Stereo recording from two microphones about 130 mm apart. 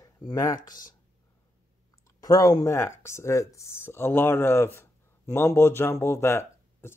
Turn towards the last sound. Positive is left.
turn(degrees=20)  # may be behind; listen again after turning